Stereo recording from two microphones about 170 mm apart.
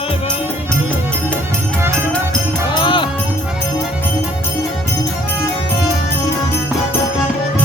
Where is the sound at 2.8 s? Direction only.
30° left (ahead or behind).